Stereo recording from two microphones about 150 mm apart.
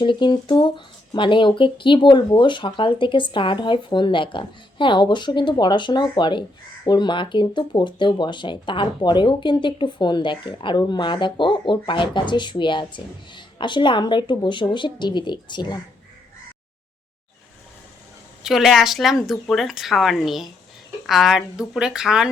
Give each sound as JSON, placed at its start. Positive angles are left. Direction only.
{"t": 0.0, "sound": "speech", "side_deg": 30}
{"t": 18.4, "sound": "speech", "side_deg": 0}